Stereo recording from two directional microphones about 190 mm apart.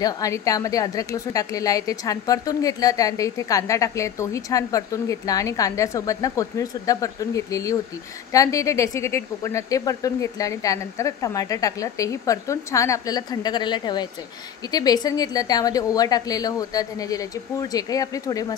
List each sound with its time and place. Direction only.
0.0 s a woman's voice: 20° left (ahead or behind)